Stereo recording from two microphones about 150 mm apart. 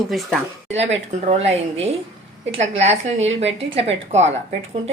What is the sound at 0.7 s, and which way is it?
Speech, 45° right (ahead or behind).